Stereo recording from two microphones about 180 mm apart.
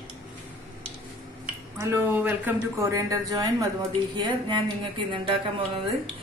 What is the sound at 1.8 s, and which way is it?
Speech, 10° right (ahead or behind).